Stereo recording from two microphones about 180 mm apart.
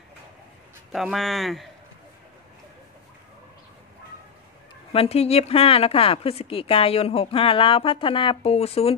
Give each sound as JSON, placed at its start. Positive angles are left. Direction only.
{"t": 0.9, "sound": "speech", "side_deg": 0}
{"t": 4.9, "sound": "a woman's voice", "side_deg": 35}